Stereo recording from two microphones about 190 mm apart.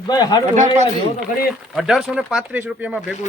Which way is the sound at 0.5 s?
40° right (ahead or behind).